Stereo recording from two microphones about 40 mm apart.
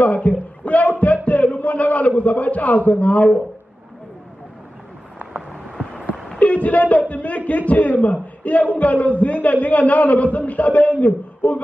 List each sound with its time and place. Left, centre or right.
0.0 s a man's voice: left
0.9 s a sound: left
6.4 s a man's voice: left